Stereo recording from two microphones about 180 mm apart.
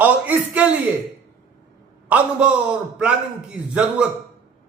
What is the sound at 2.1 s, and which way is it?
A man's voice, 5° right (ahead or behind).